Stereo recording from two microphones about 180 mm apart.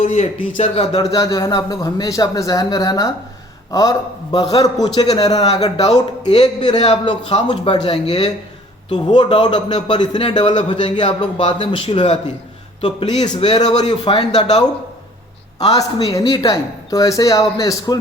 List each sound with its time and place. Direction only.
0.0 s speech: 40° left (ahead or behind)
0.9 s a man's voice: 20° left (ahead or behind); by 13.9 s 40° left (ahead or behind)
14.0 s a man's voice: 25° left (ahead or behind)
15.7 s a man's voice: 20° left (ahead or behind)